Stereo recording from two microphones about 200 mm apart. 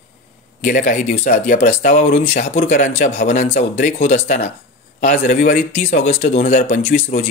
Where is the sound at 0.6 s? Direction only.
40° left (ahead or behind).